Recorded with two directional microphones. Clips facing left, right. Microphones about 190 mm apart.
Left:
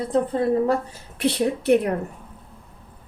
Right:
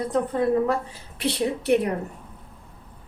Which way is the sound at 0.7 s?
50° left (ahead or behind).